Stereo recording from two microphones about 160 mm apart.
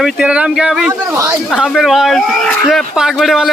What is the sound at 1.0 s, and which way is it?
Speech, 20° right (ahead or behind).